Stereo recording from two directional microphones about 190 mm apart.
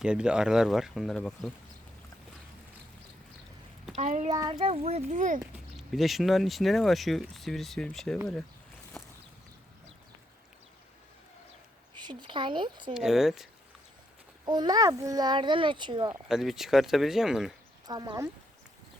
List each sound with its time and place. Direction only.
0.0 s speech: 5° right (ahead or behind)
3.9 s a child's voice: 35° right (ahead or behind)
4.3 s a child's voice: 20° right (ahead or behind); by 5.4 s 40° right (ahead or behind)
5.4 s speech: centre (ahead or behind)
11.9 s speech: 25° right (ahead or behind)
12.9 s speech: centre (ahead or behind)
14.4 s a child's voice: 20° right (ahead or behind)
16.3 s speech: centre (ahead or behind)
17.8 s a child's voice: 20° right (ahead or behind)